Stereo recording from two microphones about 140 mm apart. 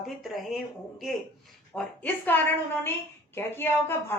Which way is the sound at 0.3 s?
Centre (ahead or behind).